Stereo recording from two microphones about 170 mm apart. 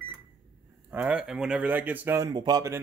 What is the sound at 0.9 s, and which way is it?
Speech, 5° right (ahead or behind).